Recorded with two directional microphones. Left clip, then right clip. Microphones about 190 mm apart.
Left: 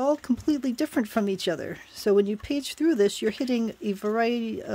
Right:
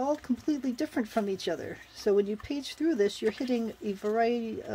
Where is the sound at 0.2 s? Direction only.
45° left (ahead or behind).